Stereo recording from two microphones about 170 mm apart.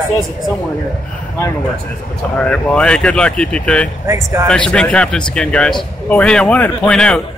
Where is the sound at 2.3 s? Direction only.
5° left (ahead or behind).